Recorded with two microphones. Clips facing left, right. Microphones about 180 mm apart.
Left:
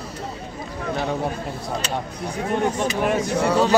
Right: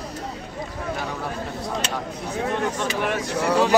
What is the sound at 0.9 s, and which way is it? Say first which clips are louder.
Speech: left 7 dB; 25° left (ahead or behind).